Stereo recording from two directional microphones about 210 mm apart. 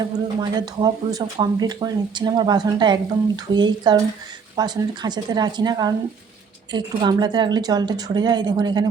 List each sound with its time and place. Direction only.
0.0 s speech: 20° right (ahead or behind)